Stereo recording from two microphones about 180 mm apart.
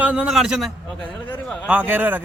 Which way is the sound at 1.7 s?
10° right (ahead or behind).